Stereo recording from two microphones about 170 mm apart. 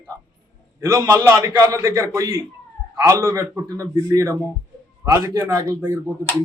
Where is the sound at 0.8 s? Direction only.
15° right (ahead or behind).